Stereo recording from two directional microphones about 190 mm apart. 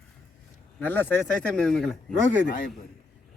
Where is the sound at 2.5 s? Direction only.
45° left (ahead or behind).